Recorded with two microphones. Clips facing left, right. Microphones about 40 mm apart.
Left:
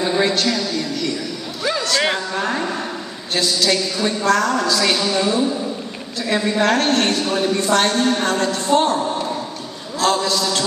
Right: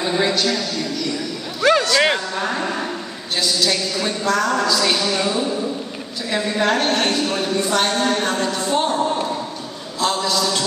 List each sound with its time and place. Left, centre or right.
0.0 s a woman's voice: centre
1.6 s a sound: right
1.9 s speech: centre
2.1 s a woman's voice: centre
6.6 s a woman's voice: centre
9.9 s a sound: centre